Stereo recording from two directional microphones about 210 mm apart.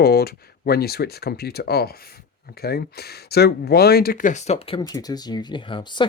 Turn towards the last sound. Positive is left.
turn(degrees=25)  # may be behind; listen again after turning